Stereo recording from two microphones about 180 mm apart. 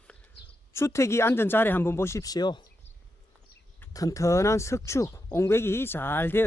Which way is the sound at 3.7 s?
20° left (ahead or behind).